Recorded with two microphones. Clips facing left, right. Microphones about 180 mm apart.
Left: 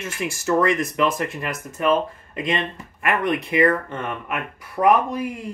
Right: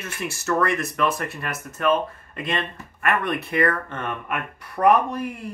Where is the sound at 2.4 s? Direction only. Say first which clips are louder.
Left 3 dB; 15° left (ahead or behind).